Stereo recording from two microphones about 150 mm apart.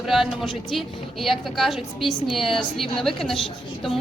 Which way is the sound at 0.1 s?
Centre (ahead or behind).